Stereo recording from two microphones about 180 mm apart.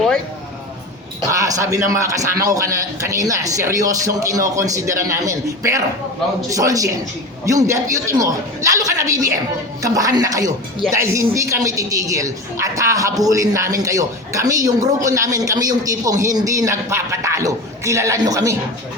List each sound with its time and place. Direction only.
1.3 s speech: 15° right (ahead or behind)